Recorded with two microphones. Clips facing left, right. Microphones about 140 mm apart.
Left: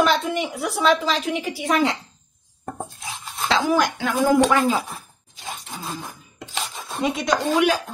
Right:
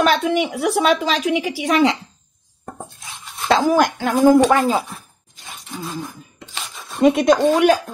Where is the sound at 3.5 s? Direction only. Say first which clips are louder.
Right 4 dB; 50° right (ahead or behind).